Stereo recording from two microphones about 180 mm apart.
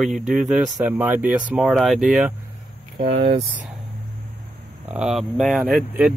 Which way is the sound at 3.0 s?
40° right (ahead or behind).